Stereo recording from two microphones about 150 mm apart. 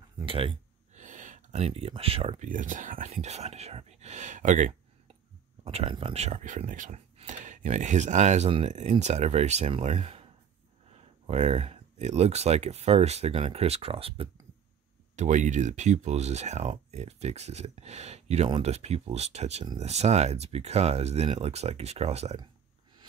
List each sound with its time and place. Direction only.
0.2 s a sound: 35° right (ahead or behind)
0.9 s a sound: 55° right (ahead or behind); by 2.4 s 40° right (ahead or behind)
2.4 s speech: 60° right (ahead or behind)
3.1 s speech: 45° right (ahead or behind)
5.6 s speech: 40° right (ahead or behind)
11.2 s speech: 45° right (ahead or behind)
15.1 s speech: 55° right (ahead or behind)